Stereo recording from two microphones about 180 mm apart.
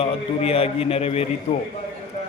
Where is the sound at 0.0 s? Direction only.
30° left (ahead or behind).